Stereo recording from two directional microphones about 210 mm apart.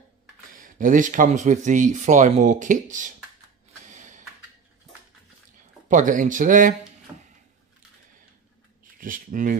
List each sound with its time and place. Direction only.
0.5 s speech: 40° right (ahead or behind)
3.8 s a sound: 35° right (ahead or behind)
5.9 s speech: 40° right (ahead or behind)
9.0 s speech: 40° right (ahead or behind)